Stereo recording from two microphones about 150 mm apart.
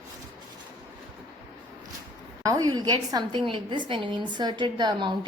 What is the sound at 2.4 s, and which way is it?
A woman's voice, 25° right (ahead or behind).